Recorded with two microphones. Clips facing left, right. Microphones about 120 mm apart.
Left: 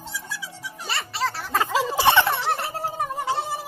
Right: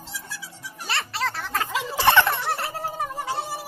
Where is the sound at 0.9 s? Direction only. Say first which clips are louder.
Left 1 dB; centre (ahead or behind).